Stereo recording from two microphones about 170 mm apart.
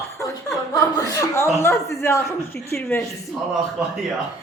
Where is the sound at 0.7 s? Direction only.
20° left (ahead or behind).